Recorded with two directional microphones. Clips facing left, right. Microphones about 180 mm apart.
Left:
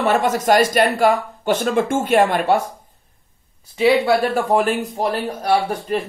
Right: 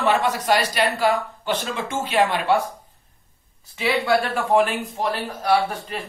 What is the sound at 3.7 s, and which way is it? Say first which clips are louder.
Speech: left 6 dB; 40° left (ahead or behind).